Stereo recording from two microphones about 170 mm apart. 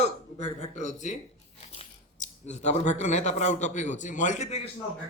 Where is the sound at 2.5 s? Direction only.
45° left (ahead or behind).